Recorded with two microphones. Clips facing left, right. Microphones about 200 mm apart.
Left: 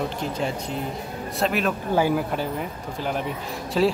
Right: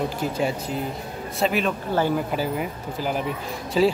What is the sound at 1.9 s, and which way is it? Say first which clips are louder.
Speech: left 1 dB; 10° left (ahead or behind).